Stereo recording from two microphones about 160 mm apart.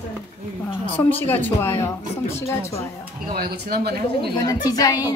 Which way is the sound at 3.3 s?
75° right (ahead or behind).